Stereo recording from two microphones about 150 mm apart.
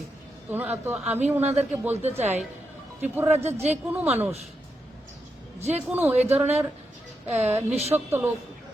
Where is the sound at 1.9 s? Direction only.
45° right (ahead or behind).